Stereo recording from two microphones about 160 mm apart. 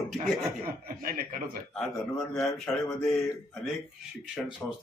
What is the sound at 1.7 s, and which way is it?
Speech, 5° left (ahead or behind).